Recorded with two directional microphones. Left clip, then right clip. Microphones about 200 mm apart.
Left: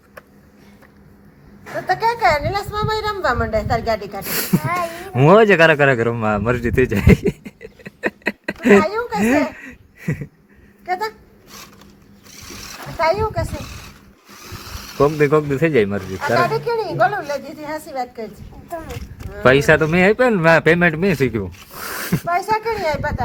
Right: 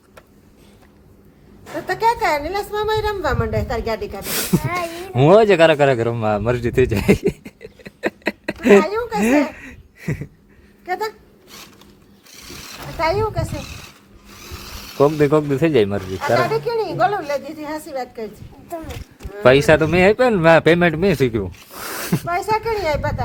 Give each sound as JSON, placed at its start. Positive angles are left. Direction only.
{"t": 1.9, "sound": "speech", "side_deg": -25}
{"t": 2.4, "sound": "a woman's voice", "side_deg": -10}
{"t": 8.8, "sound": "a sound", "side_deg": -15}
{"t": 9.2, "sound": "a sound", "side_deg": 0}
{"t": 10.8, "sound": "a sound", "side_deg": -30}
{"t": 13.0, "sound": "speech", "side_deg": -20}
{"t": 13.3, "sound": "speech", "side_deg": -10}
{"t": 18.7, "sound": "speech", "side_deg": 0}
{"t": 22.3, "sound": "speech", "side_deg": -20}